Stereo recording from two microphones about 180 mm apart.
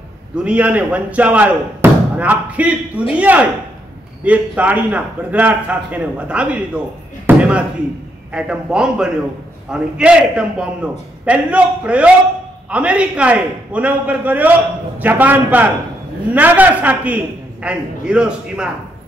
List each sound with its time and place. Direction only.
0.4 s a man's voice: 5° right (ahead or behind)
7.2 s slam: 5° right (ahead or behind)
8.3 s a man's voice: 5° right (ahead or behind)